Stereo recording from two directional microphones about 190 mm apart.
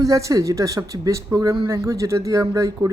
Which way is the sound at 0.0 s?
15° right (ahead or behind).